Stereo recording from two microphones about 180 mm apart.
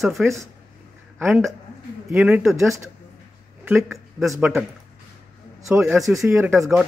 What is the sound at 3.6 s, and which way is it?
Speech, 10° right (ahead or behind).